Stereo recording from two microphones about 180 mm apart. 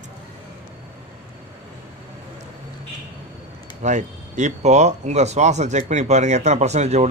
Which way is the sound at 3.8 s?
40° right (ahead or behind).